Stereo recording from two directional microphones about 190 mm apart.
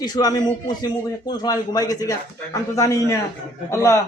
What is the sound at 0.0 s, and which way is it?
A man's voice, 20° left (ahead or behind).